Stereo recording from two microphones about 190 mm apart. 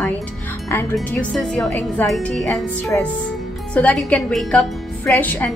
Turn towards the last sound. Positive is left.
turn(degrees=10)  # may be behind; listen again after turning